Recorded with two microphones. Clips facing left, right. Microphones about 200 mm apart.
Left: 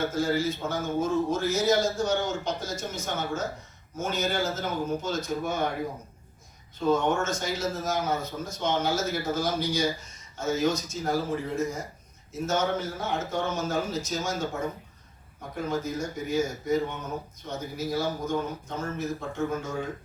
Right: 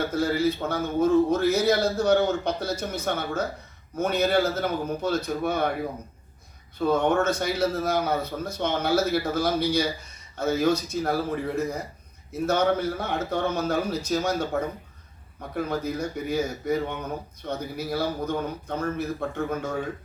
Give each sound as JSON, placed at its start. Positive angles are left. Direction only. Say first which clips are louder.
{"t": 0.1, "sound": "a man's voice", "louder": "right 3 dB", "side_deg": -60}
{"t": 6.7, "sound": "a man's voice", "louder": "right 2 dB", "side_deg": -60}